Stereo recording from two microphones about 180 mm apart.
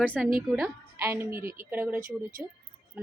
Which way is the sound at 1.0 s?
15° right (ahead or behind).